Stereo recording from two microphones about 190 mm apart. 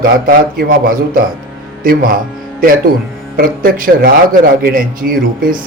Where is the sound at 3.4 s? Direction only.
50° right (ahead or behind).